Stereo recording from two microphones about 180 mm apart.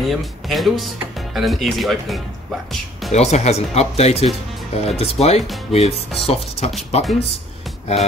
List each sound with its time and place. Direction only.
0.1 s speech: centre (ahead or behind)
3.1 s speech: 40° left (ahead or behind)